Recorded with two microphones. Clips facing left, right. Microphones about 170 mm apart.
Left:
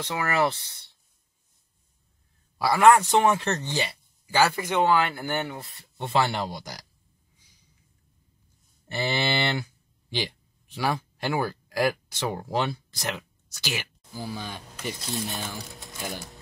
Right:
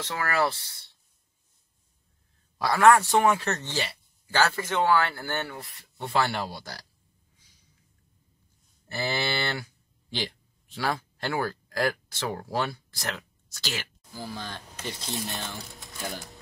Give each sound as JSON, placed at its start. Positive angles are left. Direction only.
{"t": 0.0, "sound": "speech", "side_deg": 20}
{"t": 2.6, "sound": "speech", "side_deg": 15}
{"t": 8.9, "sound": "speech", "side_deg": 20}
{"t": 15.1, "sound": "speech", "side_deg": 0}